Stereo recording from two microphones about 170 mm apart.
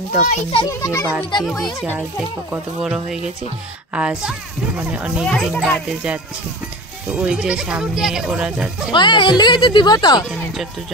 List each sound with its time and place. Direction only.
0.3 s a child's voice: 35° left (ahead or behind)
0.7 s a child's voice: 15° left (ahead or behind)
1.6 s a child's voice: centre (ahead or behind)
8.9 s speech: 25° left (ahead or behind)